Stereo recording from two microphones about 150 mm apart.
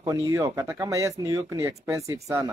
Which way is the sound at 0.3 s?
20° right (ahead or behind).